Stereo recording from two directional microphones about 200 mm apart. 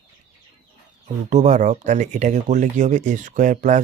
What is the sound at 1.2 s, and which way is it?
Speech, 35° right (ahead or behind).